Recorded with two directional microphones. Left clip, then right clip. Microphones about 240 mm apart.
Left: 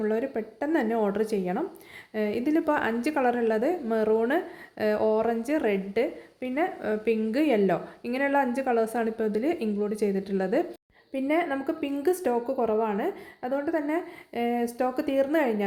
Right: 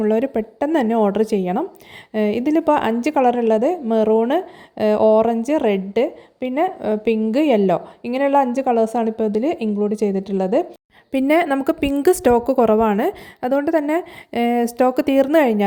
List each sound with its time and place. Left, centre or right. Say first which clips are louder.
0.0 s speech: right 9 dB; right
11.1 s a woman's voice: right 10 dB; right